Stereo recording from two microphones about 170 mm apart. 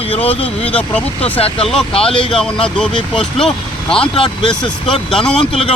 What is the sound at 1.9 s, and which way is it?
Speech, 30° left (ahead or behind).